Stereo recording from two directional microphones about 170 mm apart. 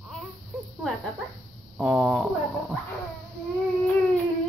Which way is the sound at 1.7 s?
5° right (ahead or behind).